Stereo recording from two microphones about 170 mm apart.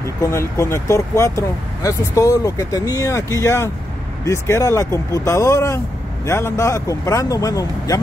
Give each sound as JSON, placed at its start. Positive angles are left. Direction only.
{"t": 0.2, "sound": "speech", "side_deg": 15}